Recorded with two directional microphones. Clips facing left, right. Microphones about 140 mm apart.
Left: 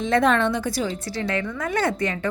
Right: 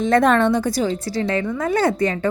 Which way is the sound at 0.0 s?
45° right (ahead or behind).